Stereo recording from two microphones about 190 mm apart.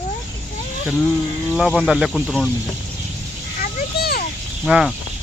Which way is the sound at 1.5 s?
Centre (ahead or behind).